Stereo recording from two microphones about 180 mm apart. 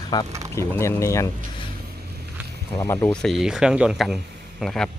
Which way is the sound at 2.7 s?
15° left (ahead or behind).